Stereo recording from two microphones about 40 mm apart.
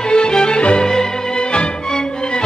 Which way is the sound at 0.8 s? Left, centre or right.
Centre.